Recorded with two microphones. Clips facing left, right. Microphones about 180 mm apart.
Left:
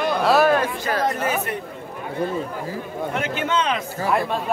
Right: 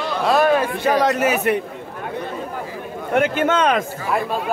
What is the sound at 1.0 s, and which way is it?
Speech, 80° right.